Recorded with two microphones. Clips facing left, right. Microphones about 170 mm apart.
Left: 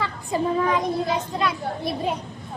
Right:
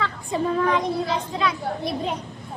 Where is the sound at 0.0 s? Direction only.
5° left (ahead or behind).